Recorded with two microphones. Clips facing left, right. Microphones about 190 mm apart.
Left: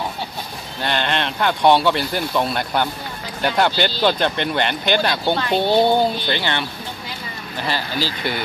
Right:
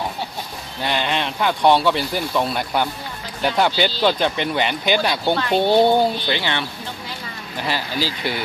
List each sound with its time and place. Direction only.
0.8 s speech: 5° right (ahead or behind)
5.3 s speech: 15° left (ahead or behind)
5.6 s speech: 15° right (ahead or behind)
7.6 s speech: 10° right (ahead or behind)